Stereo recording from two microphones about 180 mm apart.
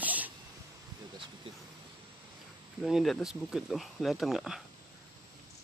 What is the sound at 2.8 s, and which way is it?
Speech, centre (ahead or behind).